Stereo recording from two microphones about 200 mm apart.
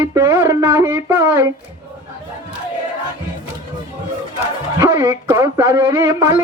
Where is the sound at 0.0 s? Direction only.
20° right (ahead or behind).